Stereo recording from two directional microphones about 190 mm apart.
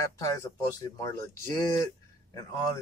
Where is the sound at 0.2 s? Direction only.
15° left (ahead or behind).